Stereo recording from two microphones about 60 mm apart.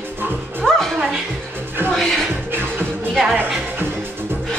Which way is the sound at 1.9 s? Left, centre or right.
Centre.